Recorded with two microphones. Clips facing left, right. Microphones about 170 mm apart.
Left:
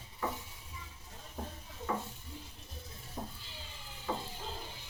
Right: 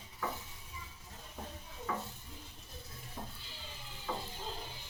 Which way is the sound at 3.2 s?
20° left (ahead or behind).